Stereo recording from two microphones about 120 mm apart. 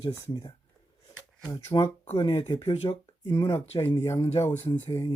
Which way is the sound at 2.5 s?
50° left (ahead or behind).